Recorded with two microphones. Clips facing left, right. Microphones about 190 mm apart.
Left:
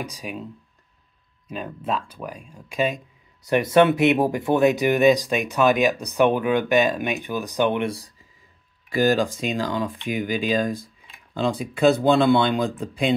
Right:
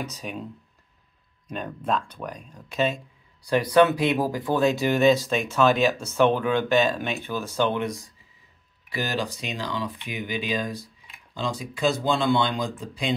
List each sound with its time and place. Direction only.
0.0 s speech: 10° left (ahead or behind)
1.5 s speech: 5° left (ahead or behind)
3.4 s speech: 25° left (ahead or behind)
7.8 s speech: 35° left (ahead or behind)
8.9 s speech: 45° left (ahead or behind)